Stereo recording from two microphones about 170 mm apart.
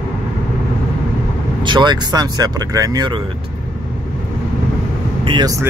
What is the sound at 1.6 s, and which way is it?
Speech, 25° right (ahead or behind).